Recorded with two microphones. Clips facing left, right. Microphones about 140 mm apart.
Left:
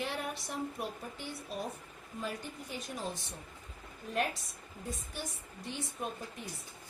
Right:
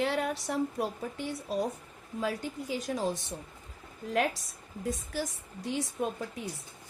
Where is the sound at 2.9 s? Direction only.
85° right.